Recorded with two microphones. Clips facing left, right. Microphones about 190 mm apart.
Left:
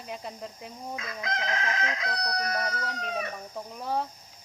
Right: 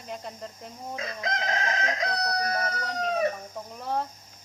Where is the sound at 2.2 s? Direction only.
25° right (ahead or behind).